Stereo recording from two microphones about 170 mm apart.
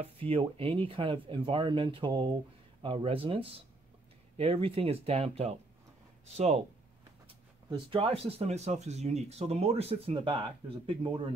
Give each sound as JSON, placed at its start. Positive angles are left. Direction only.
{"t": 0.0, "sound": "speech", "side_deg": -35}